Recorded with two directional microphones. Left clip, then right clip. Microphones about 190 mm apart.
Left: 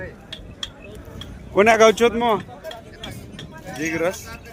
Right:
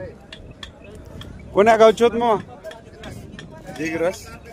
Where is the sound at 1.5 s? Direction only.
10° right (ahead or behind).